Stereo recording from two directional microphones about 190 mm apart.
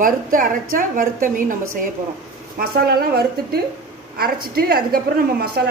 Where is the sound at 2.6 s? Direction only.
55° right (ahead or behind).